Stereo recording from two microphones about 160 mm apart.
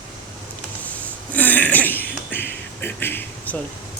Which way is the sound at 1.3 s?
10° left (ahead or behind).